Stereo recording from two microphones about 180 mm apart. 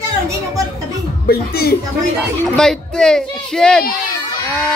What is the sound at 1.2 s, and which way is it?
Speech, 60° left (ahead or behind).